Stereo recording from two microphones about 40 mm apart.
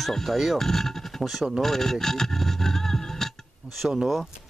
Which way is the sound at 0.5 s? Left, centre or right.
Centre.